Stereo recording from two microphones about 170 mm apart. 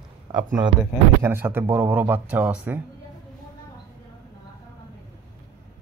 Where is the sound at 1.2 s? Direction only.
15° right (ahead or behind).